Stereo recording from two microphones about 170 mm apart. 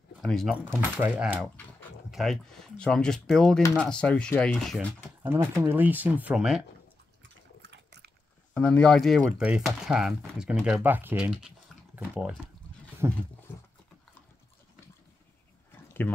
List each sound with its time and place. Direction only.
0.2 s speech: centre (ahead or behind)
0.7 s speech: 10° right (ahead or behind)
5.2 s speech: 15° right (ahead or behind)
7.7 s biting: 80° right
8.5 s speech: 5° left (ahead or behind); by 13.2 s 15° right (ahead or behind)
13.5 s dog: 10° left (ahead or behind)